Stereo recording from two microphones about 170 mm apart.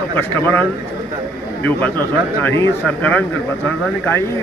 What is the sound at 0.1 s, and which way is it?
A man's voice, 10° left (ahead or behind).